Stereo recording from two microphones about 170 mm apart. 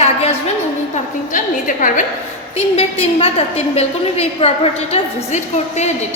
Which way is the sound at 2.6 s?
35° left (ahead or behind).